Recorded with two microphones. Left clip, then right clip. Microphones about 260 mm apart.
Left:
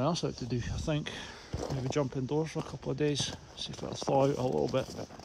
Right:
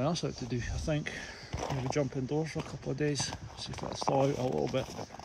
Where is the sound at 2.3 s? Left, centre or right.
Centre.